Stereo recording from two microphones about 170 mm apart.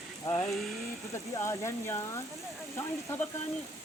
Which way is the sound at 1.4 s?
15° left (ahead or behind).